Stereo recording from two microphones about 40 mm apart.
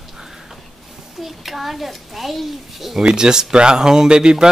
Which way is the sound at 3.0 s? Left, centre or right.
Centre.